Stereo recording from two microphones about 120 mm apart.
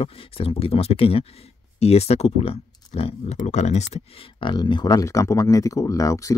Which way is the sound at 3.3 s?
70° left (ahead or behind).